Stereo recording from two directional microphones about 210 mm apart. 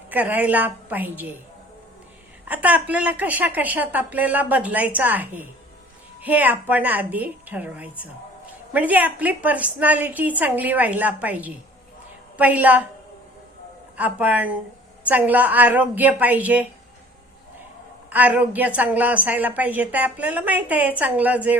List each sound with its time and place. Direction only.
0.1 s a woman's voice: 10° right (ahead or behind)
2.5 s a woman's voice: 5° right (ahead or behind)
13.9 s a woman's voice: 5° right (ahead or behind)
18.1 s a woman's voice: 5° right (ahead or behind)